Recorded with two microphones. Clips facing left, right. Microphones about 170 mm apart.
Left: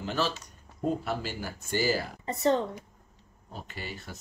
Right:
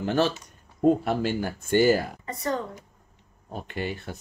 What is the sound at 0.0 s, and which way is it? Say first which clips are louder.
Speech: right 7 dB; 55° right (ahead or behind).